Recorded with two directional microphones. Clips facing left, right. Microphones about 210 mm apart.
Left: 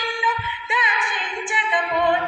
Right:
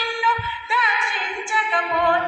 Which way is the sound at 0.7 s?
15° left (ahead or behind).